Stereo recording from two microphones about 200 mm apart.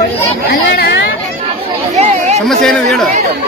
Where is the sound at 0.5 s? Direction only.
55° left (ahead or behind).